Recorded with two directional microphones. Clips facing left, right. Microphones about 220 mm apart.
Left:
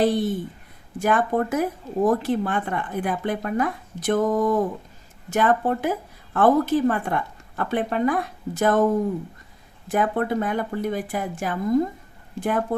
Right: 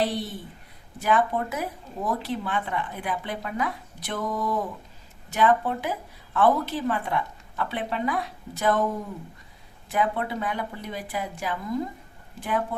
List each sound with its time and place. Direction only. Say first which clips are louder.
0.0 s speech: left 7 dB; 50° left (ahead or behind)
9.9 s speech: left 4 dB; 50° left (ahead or behind)